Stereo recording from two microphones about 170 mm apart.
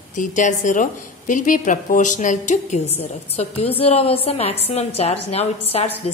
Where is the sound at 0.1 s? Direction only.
45° left (ahead or behind).